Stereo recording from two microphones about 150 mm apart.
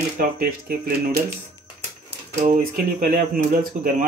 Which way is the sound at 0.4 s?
70° right (ahead or behind).